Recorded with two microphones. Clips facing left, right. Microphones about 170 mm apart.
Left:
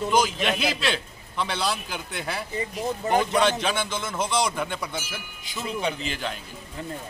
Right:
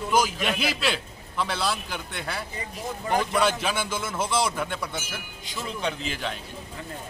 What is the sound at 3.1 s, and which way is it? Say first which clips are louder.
Speech: left 2 dB; 25° left (ahead or behind).